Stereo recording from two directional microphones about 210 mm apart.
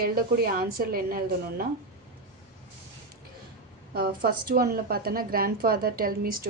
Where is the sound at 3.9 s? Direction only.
50° right (ahead or behind).